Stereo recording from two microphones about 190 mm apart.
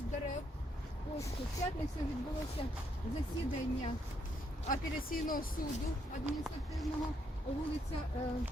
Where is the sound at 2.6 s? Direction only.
30° left (ahead or behind).